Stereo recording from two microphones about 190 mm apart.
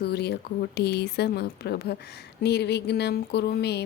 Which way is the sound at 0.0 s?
60° left (ahead or behind).